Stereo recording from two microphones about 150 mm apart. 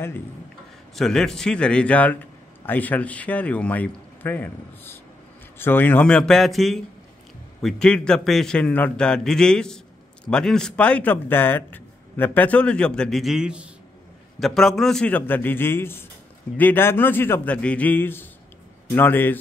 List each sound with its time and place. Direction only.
0.9 s a man's voice: 5° left (ahead or behind)